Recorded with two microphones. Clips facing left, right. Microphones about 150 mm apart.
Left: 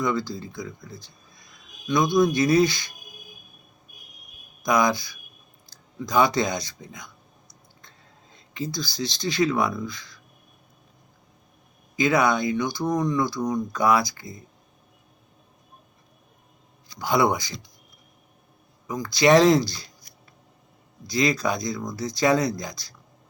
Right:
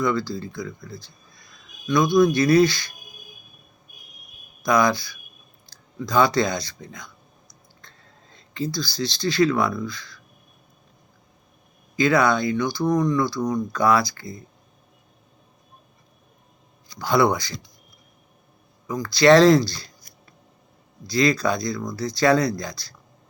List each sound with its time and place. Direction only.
0.0 s speech: 15° left (ahead or behind)
4.6 s speech: 15° left (ahead or behind)
11.9 s speech: 15° left (ahead or behind)
17.0 s speech: 15° left (ahead or behind)
18.9 s speech: 20° left (ahead or behind)
21.1 s speech: 15° left (ahead or behind)